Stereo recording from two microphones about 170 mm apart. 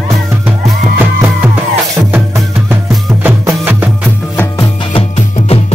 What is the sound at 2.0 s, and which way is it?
Music, 10° right (ahead or behind).